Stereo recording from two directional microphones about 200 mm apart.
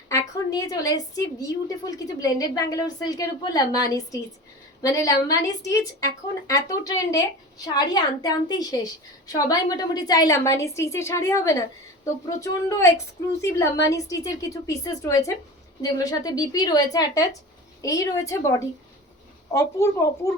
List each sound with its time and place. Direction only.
0.1 s a woman's voice: 20° left (ahead or behind)
13.9 s a woman's voice: 15° left (ahead or behind)